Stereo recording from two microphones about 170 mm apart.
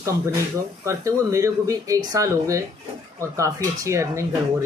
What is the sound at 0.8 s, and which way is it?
A man's voice, 15° right (ahead or behind).